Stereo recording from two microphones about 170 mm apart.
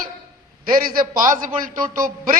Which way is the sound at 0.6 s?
60° right (ahead or behind).